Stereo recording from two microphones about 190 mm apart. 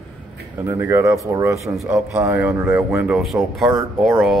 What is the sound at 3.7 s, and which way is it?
Speech, 15° right (ahead or behind).